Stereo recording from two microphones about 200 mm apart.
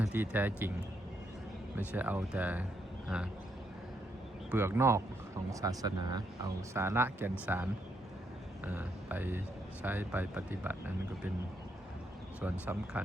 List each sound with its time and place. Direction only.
0.0 s speech: 10° right (ahead or behind)
1.7 s speech: 10° right (ahead or behind)
3.1 s duck: 5° right (ahead or behind)
4.5 s speech: 10° right (ahead or behind)
12.4 s speech: 5° right (ahead or behind)